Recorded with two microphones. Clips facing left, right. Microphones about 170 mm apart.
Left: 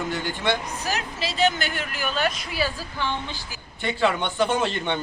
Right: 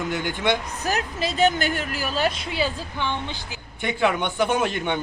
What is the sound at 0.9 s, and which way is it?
A man's voice, 50° right (ahead or behind).